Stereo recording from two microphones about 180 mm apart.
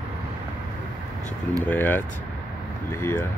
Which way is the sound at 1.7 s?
10° left (ahead or behind).